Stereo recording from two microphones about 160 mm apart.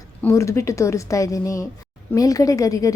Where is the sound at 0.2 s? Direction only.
15° left (ahead or behind).